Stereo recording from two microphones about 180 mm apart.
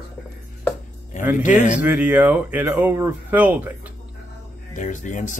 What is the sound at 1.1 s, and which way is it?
Speech, 40° left (ahead or behind).